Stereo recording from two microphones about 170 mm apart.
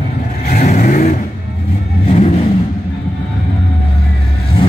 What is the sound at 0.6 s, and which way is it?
Vehicle, 45° left (ahead or behind).